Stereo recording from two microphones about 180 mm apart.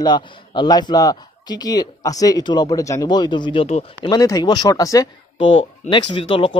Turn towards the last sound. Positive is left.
turn(degrees=30)  # may be behind; listen again after turning